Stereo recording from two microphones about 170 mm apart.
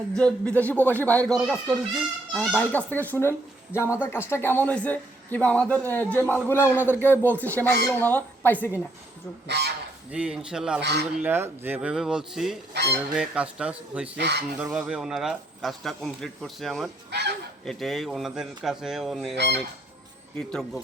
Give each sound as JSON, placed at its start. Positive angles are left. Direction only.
{"t": 0.2, "sound": "speech", "side_deg": 5}
{"t": 9.5, "sound": "a man's voice", "side_deg": -75}
{"t": 10.1, "sound": "speech", "side_deg": -5}
{"t": 10.8, "sound": "speech", "side_deg": -90}
{"t": 11.2, "sound": "speech", "side_deg": -10}
{"t": 12.7, "sound": "speech", "side_deg": -90}
{"t": 13.1, "sound": "a man's voice", "side_deg": -5}
{"t": 14.2, "sound": "speech", "side_deg": -85}
{"t": 14.6, "sound": "speech", "side_deg": -5}
{"t": 17.1, "sound": "speech", "side_deg": -80}
{"t": 17.7, "sound": "speech", "side_deg": 0}
{"t": 20.5, "sound": "speech", "side_deg": 0}